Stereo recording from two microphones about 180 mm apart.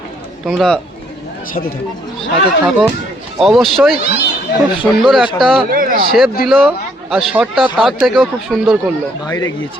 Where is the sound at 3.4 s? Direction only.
Centre (ahead or behind).